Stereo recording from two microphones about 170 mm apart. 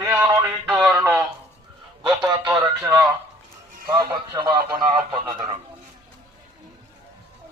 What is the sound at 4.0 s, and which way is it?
Speech, 25° right (ahead or behind).